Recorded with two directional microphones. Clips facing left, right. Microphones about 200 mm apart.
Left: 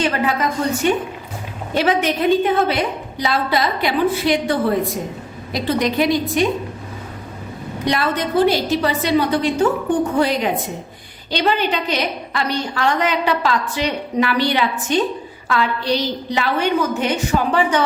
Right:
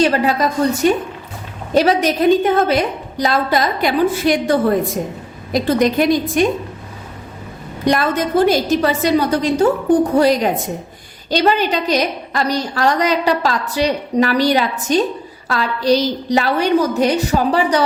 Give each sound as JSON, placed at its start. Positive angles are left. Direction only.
{"t": 0.0, "sound": "a woman's voice", "side_deg": -35}
{"t": 7.9, "sound": "a woman's voice", "side_deg": -45}